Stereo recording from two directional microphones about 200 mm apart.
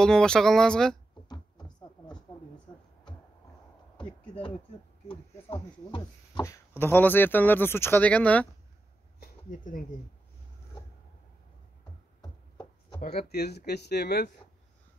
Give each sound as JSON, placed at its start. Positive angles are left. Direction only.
{"t": 0.0, "sound": "speech", "side_deg": 5}
{"t": 1.3, "sound": "a sound", "side_deg": 20}
{"t": 5.0, "sound": "speech", "side_deg": 25}
{"t": 9.2, "sound": "a sound", "side_deg": 45}
{"t": 12.2, "sound": "chopping", "side_deg": 20}
{"t": 13.0, "sound": "speech", "side_deg": 50}